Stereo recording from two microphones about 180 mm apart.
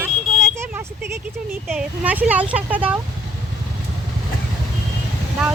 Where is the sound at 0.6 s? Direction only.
15° right (ahead or behind).